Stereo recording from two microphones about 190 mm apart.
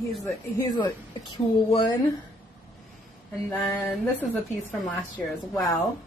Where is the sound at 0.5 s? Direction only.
20° left (ahead or behind).